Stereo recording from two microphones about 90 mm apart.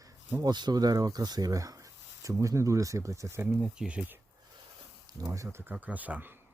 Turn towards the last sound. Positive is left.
turn(degrees=-15)  # may be behind; listen again after turning